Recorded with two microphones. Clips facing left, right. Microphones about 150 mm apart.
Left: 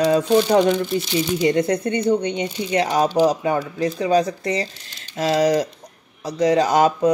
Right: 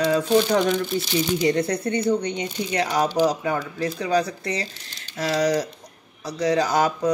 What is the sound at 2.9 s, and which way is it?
Speech, 30° left (ahead or behind).